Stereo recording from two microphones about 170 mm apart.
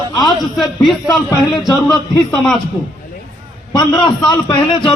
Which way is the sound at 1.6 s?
25° left (ahead or behind).